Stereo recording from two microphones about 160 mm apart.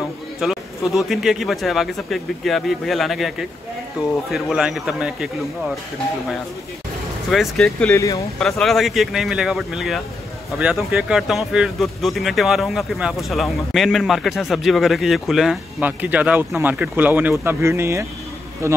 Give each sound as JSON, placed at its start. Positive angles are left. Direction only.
{"t": 0.4, "sound": "speech", "side_deg": 0}
{"t": 7.2, "sound": "speech", "side_deg": 0}
{"t": 7.9, "sound": "speech", "side_deg": 20}
{"t": 8.4, "sound": "a man's voice", "side_deg": 0}